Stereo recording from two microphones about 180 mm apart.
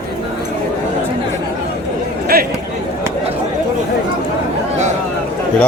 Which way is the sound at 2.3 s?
55° right (ahead or behind).